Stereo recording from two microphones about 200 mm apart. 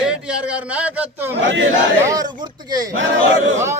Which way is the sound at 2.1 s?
20° right (ahead or behind).